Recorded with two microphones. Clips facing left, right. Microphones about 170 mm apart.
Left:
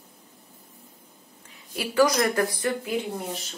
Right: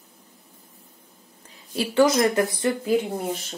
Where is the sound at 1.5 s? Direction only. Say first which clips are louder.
Right 5 dB; 25° right (ahead or behind).